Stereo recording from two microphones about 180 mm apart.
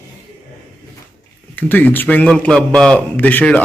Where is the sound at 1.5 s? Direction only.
10° left (ahead or behind).